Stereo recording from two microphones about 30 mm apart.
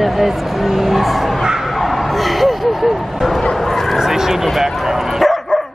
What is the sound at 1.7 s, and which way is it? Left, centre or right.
Vehicle, centre.